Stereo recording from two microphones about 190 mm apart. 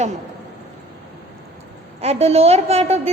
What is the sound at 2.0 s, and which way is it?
A woman's voice, 35° right (ahead or behind).